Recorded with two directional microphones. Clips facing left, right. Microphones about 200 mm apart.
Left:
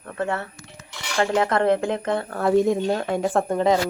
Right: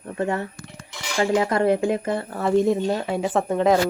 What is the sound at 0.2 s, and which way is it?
Speech, 15° right (ahead or behind).